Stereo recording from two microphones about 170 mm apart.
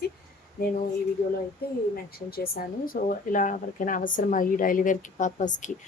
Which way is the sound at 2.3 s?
60° left (ahead or behind).